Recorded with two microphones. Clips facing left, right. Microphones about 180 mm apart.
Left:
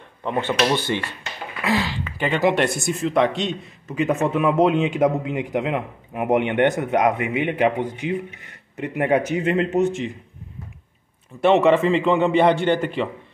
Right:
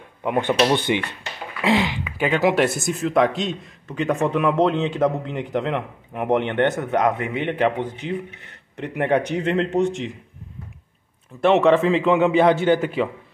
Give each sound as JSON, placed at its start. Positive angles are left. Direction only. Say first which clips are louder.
{"t": 0.2, "sound": "speech", "louder": "right 2 dB", "side_deg": -15}
{"t": 2.1, "sound": "a man's voice", "louder": "right 1 dB", "side_deg": -5}
{"t": 11.4, "sound": "a man's voice", "louder": "even", "side_deg": 0}